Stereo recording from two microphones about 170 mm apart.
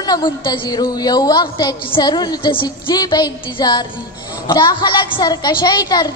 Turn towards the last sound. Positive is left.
turn(degrees=25)  # may be behind; listen again after turning